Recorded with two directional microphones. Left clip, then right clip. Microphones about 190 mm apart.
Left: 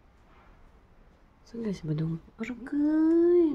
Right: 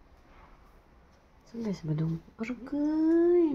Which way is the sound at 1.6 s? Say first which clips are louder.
Left 1 dB; 15° left (ahead or behind).